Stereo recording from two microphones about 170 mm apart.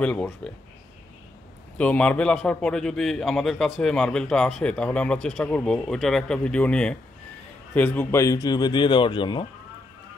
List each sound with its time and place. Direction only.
0.0 s a man's voice: 5° left (ahead or behind)
1.8 s a man's voice: 5° left (ahead or behind); by 9.5 s 30° left (ahead or behind)